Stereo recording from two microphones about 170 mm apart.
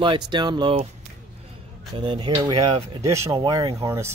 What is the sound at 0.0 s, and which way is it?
Speech, 30° right (ahead or behind).